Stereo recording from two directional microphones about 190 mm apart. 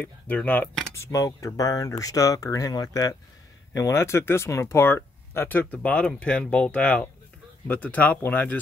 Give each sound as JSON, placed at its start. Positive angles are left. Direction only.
{"t": 0.0, "sound": "speech", "side_deg": 10}